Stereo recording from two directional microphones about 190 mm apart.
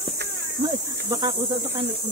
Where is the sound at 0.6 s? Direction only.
20° right (ahead or behind).